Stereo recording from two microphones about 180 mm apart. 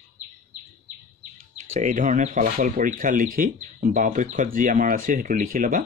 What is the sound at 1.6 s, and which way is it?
Speech, 40° right (ahead or behind).